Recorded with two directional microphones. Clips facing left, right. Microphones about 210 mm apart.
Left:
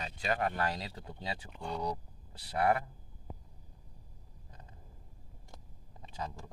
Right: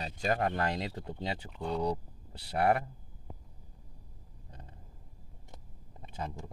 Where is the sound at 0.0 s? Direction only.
40° right (ahead or behind).